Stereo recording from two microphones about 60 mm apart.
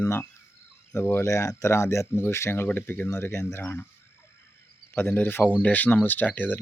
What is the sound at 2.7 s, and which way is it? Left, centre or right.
Speech, left.